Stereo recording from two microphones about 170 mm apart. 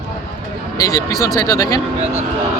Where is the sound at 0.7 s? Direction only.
20° left (ahead or behind).